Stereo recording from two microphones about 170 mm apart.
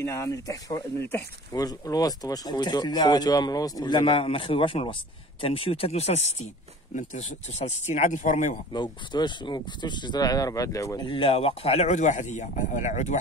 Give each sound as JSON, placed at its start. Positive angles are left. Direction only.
{"t": 0.0, "sound": "speech", "side_deg": 15}
{"t": 8.7, "sound": "speech", "side_deg": 25}
{"t": 11.1, "sound": "speech", "side_deg": 30}